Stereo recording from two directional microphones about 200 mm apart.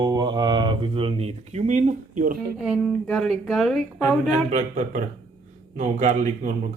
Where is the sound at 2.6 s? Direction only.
Centre (ahead or behind).